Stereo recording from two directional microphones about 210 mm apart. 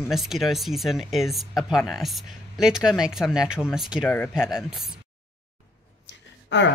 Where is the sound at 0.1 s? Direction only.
Centre (ahead or behind).